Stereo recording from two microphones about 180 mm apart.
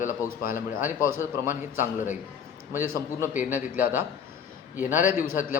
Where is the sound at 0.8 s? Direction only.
10° right (ahead or behind).